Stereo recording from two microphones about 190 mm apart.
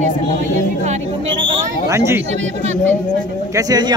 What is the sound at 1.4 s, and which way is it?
Speech, 15° right (ahead or behind).